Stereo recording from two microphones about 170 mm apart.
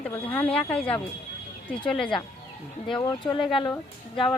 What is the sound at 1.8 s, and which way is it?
Speech, 5° left (ahead or behind).